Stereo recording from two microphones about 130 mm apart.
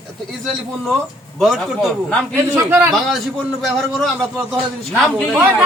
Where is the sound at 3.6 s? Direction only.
Centre (ahead or behind).